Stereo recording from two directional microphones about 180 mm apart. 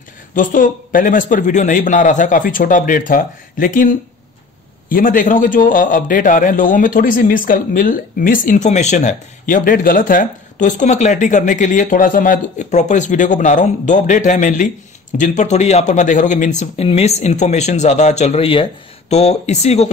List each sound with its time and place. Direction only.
0.3 s a man's voice: 50° left (ahead or behind)